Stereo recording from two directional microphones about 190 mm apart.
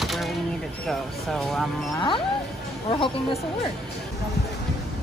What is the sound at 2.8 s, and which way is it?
Speech, 30° left (ahead or behind).